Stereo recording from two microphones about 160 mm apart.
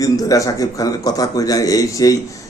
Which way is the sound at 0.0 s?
20° left (ahead or behind).